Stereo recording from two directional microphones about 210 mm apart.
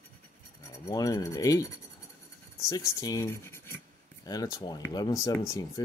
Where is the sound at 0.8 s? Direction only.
15° left (ahead or behind).